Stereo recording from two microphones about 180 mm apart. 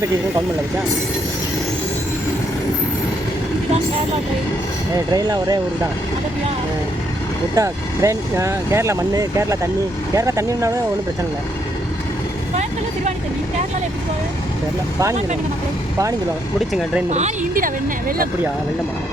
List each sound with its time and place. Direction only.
5.1 s speech: 20° right (ahead or behind)
7.5 s speech: 15° right (ahead or behind)
16.6 s speech: centre (ahead or behind)
17.1 s speech: 40° right (ahead or behind)